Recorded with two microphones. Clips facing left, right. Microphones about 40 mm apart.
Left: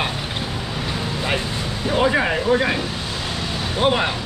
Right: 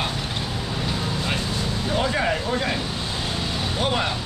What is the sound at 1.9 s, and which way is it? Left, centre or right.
Speech, left.